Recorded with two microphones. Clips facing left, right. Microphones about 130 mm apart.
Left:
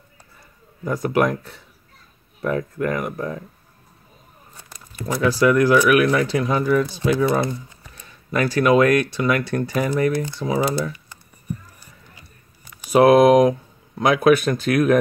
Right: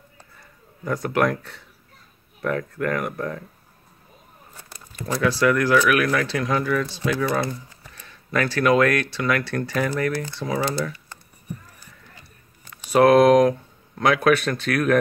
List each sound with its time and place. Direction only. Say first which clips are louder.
1.2 s speech: left 1 dB; 15° left (ahead or behind)
5.1 s speech: left 3 dB; 20° left (ahead or behind)
12.2 s speech: left 1 dB; 15° left (ahead or behind)